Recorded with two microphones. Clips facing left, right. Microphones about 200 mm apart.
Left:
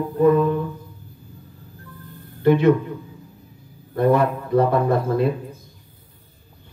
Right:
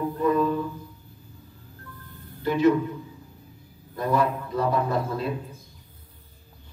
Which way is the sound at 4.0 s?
60° left (ahead or behind).